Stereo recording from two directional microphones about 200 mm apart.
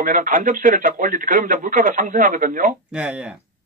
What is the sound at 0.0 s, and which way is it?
Speech, 40° right (ahead or behind).